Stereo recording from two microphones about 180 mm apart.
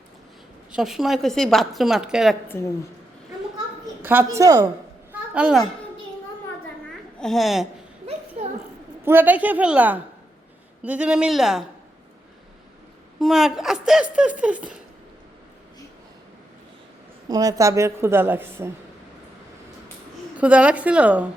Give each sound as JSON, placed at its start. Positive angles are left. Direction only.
{"t": 0.7, "sound": "a woman's voice", "side_deg": 0}
{"t": 2.5, "sound": "a woman's voice", "side_deg": 15}
{"t": 4.0, "sound": "a woman's voice", "side_deg": -10}
{"t": 5.1, "sound": "a sound", "side_deg": -5}
{"t": 7.2, "sound": "a woman's voice", "side_deg": 0}
{"t": 8.4, "sound": "a sound", "side_deg": -40}
{"t": 9.0, "sound": "a woman's voice", "side_deg": -10}
{"t": 13.1, "sound": "a woman's voice", "side_deg": 0}
{"t": 17.2, "sound": "a woman's voice", "side_deg": -20}
{"t": 20.4, "sound": "a woman's voice", "side_deg": -5}